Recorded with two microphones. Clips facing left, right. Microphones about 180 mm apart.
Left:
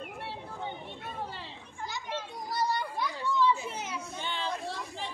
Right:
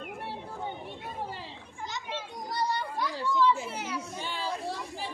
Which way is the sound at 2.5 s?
5° left (ahead or behind).